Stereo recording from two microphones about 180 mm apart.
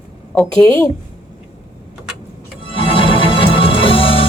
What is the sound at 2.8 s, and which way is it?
Music, 30° left (ahead or behind).